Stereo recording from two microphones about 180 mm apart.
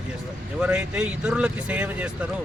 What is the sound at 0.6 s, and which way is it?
Speech, 5° right (ahead or behind).